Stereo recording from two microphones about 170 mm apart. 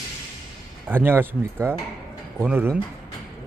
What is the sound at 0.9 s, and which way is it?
Speech, 10° right (ahead or behind).